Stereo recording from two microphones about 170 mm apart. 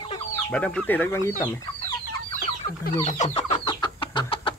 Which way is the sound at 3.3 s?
35° left (ahead or behind).